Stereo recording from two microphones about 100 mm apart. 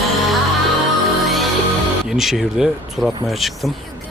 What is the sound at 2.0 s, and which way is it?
Speech, 5° right (ahead or behind).